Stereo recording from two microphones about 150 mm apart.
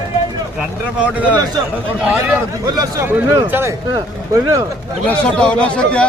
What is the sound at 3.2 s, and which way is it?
Speech, 15° right (ahead or behind).